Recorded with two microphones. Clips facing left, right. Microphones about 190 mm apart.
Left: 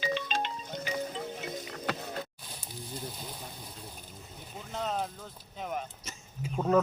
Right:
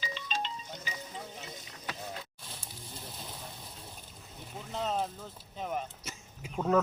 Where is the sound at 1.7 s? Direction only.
65° left (ahead or behind).